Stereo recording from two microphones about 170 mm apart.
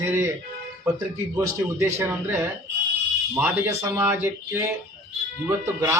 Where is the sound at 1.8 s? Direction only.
15° right (ahead or behind).